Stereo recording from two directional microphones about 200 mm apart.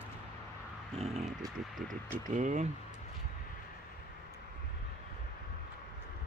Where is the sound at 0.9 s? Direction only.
30° right (ahead or behind).